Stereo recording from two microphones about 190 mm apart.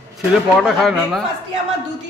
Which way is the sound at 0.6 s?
Centre (ahead or behind).